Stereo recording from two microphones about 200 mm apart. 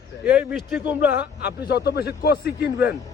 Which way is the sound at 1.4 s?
55° left (ahead or behind).